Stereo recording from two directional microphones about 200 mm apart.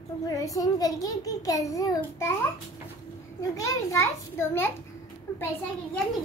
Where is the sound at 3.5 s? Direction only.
15° left (ahead or behind).